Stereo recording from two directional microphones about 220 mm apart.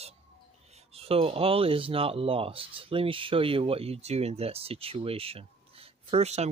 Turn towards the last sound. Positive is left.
turn(degrees=-30)  # may be behind; listen again after turning